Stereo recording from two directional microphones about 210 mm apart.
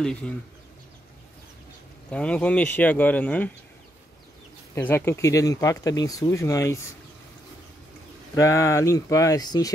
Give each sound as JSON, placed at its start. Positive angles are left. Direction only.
{"t": 0.0, "sound": "speech", "side_deg": 5}
{"t": 2.0, "sound": "speech", "side_deg": 5}
{"t": 4.7, "sound": "speech", "side_deg": 10}
{"t": 8.4, "sound": "speech", "side_deg": 15}